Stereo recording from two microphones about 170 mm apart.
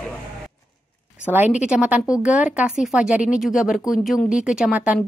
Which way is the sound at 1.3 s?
10° right (ahead or behind).